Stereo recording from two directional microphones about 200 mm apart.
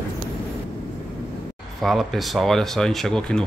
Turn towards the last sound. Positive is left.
turn(degrees=5)  # may be behind; listen again after turning